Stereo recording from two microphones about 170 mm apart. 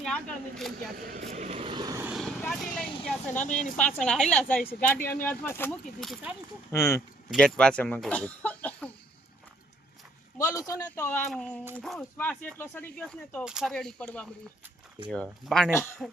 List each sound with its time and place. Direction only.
0.0 s speech: 5° left (ahead or behind)
0.9 s vehicle: 50° right (ahead or behind); by 2.0 s 20° right (ahead or behind)
2.0 s vehicle: centre (ahead or behind)
2.4 s speech: 5° left (ahead or behind)
3.3 s speech: 45° left (ahead or behind)
3.8 s speech: 5° left (ahead or behind)
6.0 s speech: centre (ahead or behind)
6.7 s speech: 15° left (ahead or behind)
7.3 s speech: 5° left (ahead or behind)
10.3 s speech: 20° left (ahead or behind)
13.4 s speech: 5° right (ahead or behind)